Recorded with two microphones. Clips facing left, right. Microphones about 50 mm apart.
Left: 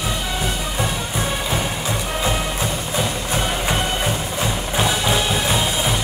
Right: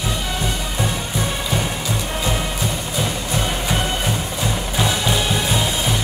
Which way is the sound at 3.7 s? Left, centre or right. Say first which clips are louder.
Even; centre.